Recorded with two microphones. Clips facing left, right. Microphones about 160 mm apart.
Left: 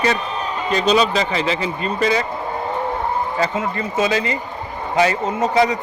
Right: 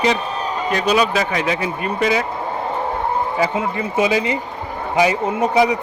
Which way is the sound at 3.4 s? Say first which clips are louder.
Right 1 dB; 15° right (ahead or behind).